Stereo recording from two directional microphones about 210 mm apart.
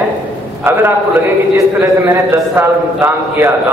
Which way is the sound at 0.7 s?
10° right (ahead or behind).